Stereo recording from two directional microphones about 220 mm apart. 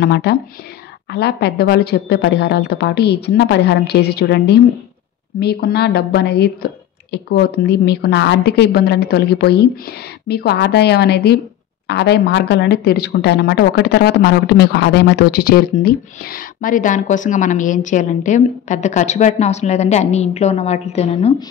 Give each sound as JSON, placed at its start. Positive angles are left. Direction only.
{"t": 0.0, "sound": "a woman's voice", "side_deg": 50}